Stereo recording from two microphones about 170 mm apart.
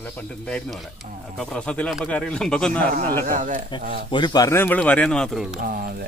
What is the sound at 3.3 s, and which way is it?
Speech, 50° right (ahead or behind).